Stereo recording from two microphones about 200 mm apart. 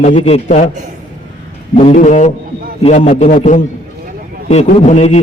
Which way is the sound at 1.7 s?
35° left (ahead or behind).